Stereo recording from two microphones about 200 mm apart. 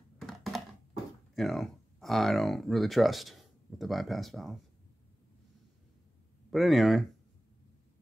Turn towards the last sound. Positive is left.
turn(degrees=0)  # may be behind; listen again after turning